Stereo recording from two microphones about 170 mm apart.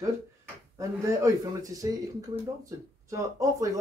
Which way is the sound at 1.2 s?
20° right (ahead or behind).